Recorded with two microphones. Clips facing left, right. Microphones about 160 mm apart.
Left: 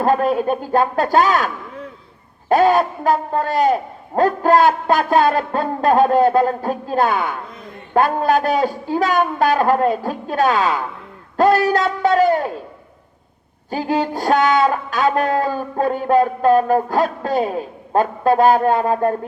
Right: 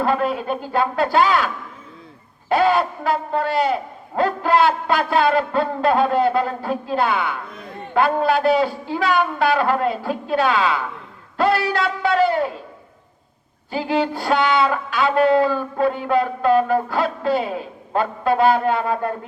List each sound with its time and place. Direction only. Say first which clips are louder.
0.0 s speech: left 4 dB; 45° left (ahead or behind)
2.5 s speech: left 3 dB; 45° left (ahead or behind)
13.7 s speech: left 1 dB; 45° left (ahead or behind)